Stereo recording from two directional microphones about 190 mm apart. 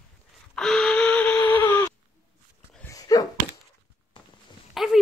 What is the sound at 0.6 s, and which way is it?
Gasp, centre (ahead or behind).